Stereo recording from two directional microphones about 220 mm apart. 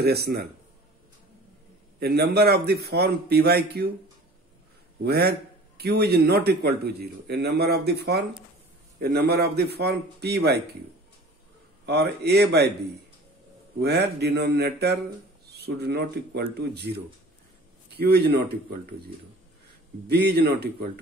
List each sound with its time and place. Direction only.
0.0 s a man's voice: 45° right (ahead or behind)
2.0 s a man's voice: 45° right (ahead or behind)
5.0 s a man's voice: 45° right (ahead or behind)
11.8 s a man's voice: 50° right (ahead or behind)
13.7 s a man's voice: 45° right (ahead or behind)
17.9 s a man's voice: 50° right (ahead or behind)
20.1 s a man's voice: 50° right (ahead or behind)